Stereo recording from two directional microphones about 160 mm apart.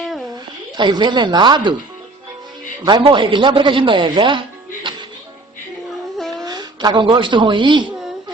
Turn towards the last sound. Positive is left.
turn(degrees=-30)  # may be behind; listen again after turning